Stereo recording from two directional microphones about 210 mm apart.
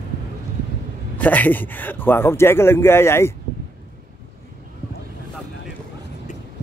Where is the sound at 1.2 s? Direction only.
5° left (ahead or behind).